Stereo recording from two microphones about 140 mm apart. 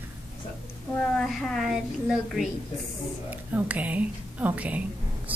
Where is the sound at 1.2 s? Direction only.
Centre (ahead or behind).